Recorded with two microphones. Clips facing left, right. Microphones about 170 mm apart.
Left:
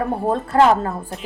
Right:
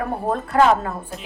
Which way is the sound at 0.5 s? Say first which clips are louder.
Left 2 dB; 30° left (ahead or behind).